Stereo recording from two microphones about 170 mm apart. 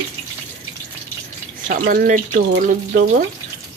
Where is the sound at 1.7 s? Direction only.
55° right (ahead or behind).